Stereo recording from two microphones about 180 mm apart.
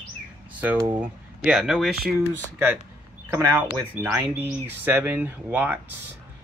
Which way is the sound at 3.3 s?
15° right (ahead or behind).